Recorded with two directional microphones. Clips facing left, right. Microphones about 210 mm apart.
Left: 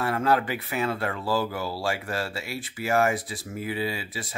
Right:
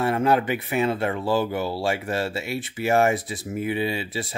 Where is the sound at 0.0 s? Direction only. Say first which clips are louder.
Right 3 dB; 20° right (ahead or behind).